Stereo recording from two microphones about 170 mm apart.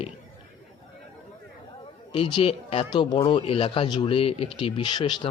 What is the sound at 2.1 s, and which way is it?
Speech, 30° left (ahead or behind).